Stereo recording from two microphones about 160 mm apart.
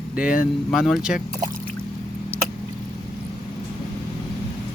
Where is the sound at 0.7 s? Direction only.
5° right (ahead or behind).